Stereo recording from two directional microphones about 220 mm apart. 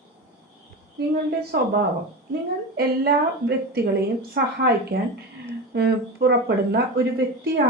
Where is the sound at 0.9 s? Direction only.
45° right (ahead or behind).